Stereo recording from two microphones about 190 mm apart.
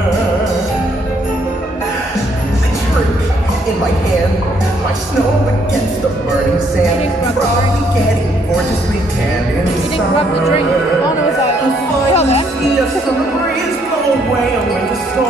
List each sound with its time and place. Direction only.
12.1 s music: 35° left (ahead or behind)